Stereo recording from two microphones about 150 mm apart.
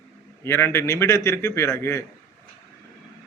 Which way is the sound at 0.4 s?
15° left (ahead or behind).